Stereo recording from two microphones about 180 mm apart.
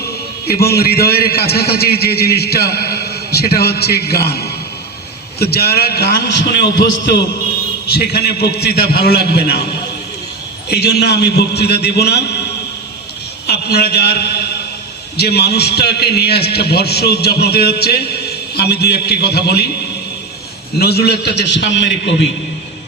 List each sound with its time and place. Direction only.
0.4 s a man's voice: 60° left (ahead or behind)
7.9 s a man's voice: 60° left (ahead or behind)
10.7 s a man's voice: 65° left (ahead or behind)
13.5 s a man's voice: 60° left (ahead or behind)
20.7 s a man's voice: 65° left (ahead or behind); by 22.3 s 80° left